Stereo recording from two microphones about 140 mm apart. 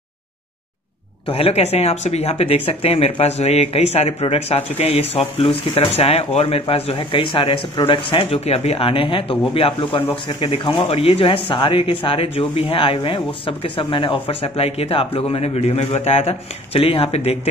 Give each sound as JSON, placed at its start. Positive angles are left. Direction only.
{"t": 1.2, "sound": "a man's voice", "side_deg": 45}